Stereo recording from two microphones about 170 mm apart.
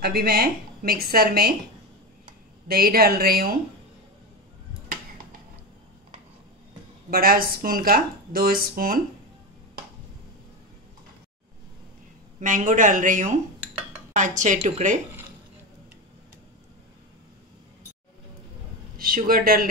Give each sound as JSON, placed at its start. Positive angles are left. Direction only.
{"t": 0.0, "sound": "speech", "side_deg": -65}
{"t": 2.7, "sound": "speech", "side_deg": -65}
{"t": 7.1, "sound": "speech", "side_deg": -60}
{"t": 12.4, "sound": "speech", "side_deg": -50}
{"t": 18.9, "sound": "speech", "side_deg": -55}